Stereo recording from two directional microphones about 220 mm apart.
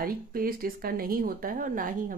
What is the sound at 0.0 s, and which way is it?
Speech, 40° right (ahead or behind).